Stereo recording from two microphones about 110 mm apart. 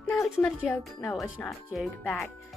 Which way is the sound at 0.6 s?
Centre (ahead or behind).